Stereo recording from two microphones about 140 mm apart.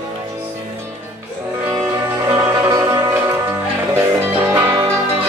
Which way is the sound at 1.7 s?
20° right (ahead or behind).